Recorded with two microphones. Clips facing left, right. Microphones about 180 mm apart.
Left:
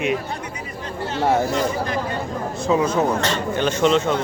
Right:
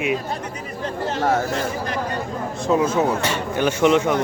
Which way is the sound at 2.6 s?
Centre (ahead or behind).